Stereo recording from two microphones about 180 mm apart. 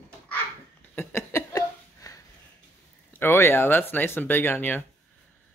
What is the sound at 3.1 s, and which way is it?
Speech, 10° left (ahead or behind).